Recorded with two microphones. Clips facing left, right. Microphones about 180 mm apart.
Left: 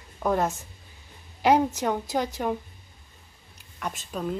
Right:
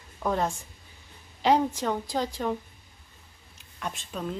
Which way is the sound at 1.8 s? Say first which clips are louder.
Left 2 dB; 15° left (ahead or behind).